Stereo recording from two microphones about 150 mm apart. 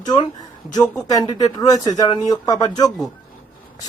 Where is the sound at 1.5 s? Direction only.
25° left (ahead or behind).